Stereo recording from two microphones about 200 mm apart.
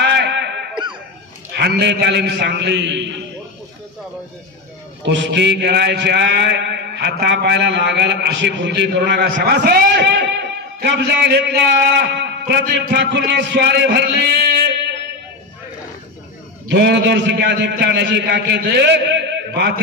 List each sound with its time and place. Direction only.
0.0 s a sound: 60° right (ahead or behind)
1.6 s a man's voice: 60° right (ahead or behind)
5.0 s a man's voice: 60° right (ahead or behind)
16.6 s a man's voice: 55° right (ahead or behind)